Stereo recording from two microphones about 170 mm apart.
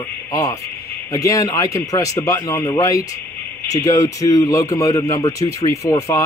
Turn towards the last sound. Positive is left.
turn(degrees=20)  # may be behind; listen again after turning